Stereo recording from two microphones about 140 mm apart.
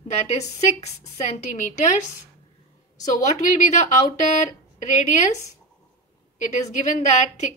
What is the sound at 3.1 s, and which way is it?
A woman's voice, 65° left (ahead or behind).